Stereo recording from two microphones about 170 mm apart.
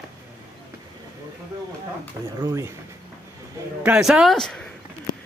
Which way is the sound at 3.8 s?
5° right (ahead or behind).